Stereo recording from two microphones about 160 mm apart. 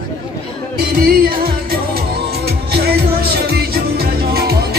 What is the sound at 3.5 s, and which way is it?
Music, 75° right (ahead or behind).